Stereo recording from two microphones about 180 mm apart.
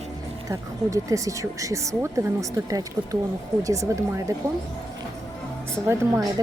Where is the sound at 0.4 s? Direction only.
20° right (ahead or behind).